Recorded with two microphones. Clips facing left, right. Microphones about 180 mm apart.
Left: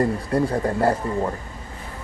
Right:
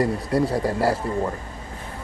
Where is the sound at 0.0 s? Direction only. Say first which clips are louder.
Even; 10° right (ahead or behind).